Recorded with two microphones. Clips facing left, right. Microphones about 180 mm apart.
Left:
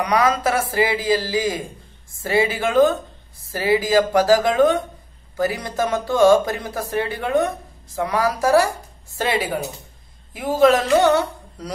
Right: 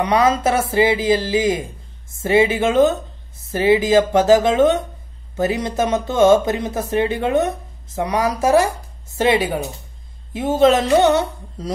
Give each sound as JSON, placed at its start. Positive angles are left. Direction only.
{"t": 0.0, "sound": "speech", "side_deg": -25}